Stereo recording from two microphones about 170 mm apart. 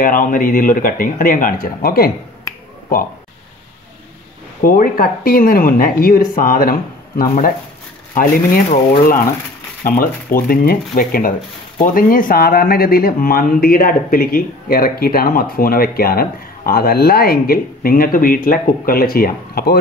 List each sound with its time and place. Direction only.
0.0 s speech: 55° left (ahead or behind)
4.6 s speech: 55° left (ahead or behind)